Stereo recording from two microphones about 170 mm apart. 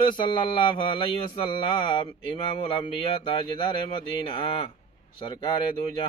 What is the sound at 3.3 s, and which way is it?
Speech, 30° left (ahead or behind).